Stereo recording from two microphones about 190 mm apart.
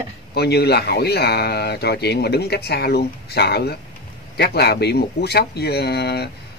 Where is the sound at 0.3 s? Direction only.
60° left (ahead or behind).